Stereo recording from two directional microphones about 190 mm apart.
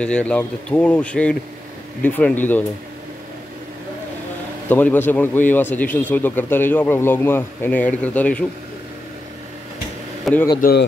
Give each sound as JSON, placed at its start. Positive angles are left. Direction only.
{"t": 0.0, "sound": "speech", "side_deg": 5}
{"t": 4.6, "sound": "speech", "side_deg": 10}
{"t": 10.3, "sound": "a man's voice", "side_deg": 0}
{"t": 10.6, "sound": "a man's voice", "side_deg": 55}